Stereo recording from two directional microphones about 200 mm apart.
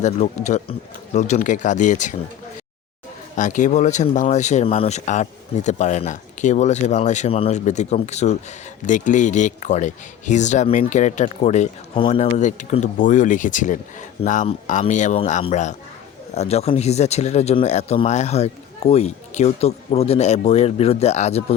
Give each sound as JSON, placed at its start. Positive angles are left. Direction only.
{"t": 0.0, "sound": "speech", "side_deg": 35}
{"t": 3.3, "sound": "speech", "side_deg": 40}